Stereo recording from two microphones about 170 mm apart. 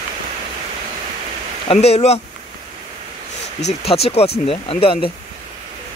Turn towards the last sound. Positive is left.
turn(degrees=30)  # may be behind; listen again after turning